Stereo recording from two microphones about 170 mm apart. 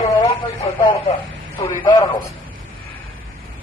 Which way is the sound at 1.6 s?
20° left (ahead or behind).